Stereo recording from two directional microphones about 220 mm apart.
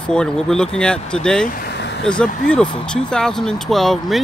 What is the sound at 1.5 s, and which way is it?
Vehicle, 50° left (ahead or behind).